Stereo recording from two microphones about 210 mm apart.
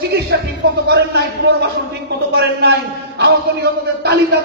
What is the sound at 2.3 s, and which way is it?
A man's voice, 50° right (ahead or behind).